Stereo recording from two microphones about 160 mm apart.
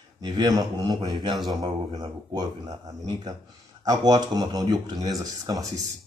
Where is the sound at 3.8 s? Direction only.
25° right (ahead or behind).